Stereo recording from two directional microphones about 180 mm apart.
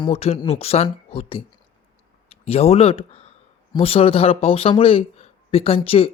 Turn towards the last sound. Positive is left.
turn(degrees=30)  # may be behind; listen again after turning